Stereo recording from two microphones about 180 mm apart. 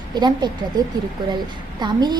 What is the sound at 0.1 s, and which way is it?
Speech, 25° right (ahead or behind).